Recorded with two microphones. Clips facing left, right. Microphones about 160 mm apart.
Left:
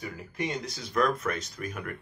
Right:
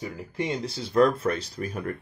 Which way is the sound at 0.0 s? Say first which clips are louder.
Right 3 dB; 30° right (ahead or behind).